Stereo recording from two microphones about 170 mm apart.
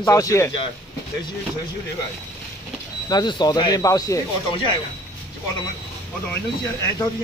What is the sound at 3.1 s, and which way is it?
Speech, 25° left (ahead or behind).